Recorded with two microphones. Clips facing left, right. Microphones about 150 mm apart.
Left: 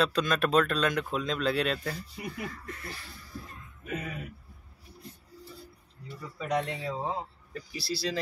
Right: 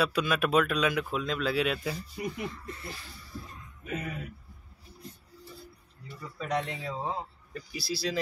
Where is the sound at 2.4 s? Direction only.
25° right (ahead or behind).